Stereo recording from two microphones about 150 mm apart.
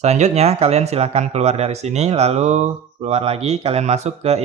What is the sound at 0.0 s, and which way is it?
Speech, 50° right (ahead or behind).